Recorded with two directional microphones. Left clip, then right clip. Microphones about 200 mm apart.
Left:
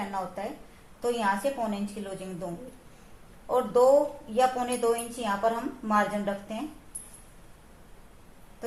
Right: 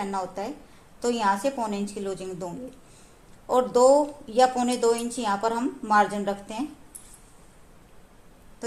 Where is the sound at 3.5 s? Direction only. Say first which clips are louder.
Right 3 dB; 55° right (ahead or behind).